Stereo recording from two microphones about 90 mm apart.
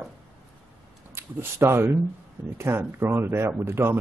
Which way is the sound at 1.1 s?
25° right (ahead or behind).